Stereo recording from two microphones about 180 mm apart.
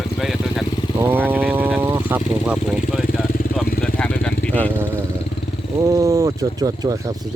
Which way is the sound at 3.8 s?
5° left (ahead or behind).